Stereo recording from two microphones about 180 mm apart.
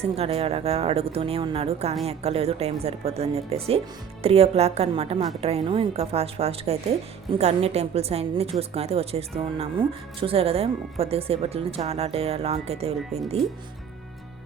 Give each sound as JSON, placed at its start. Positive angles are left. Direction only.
{"t": 0.0, "sound": "a woman's voice", "side_deg": -35}